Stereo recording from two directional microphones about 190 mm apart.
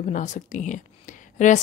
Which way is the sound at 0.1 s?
40° left (ahead or behind).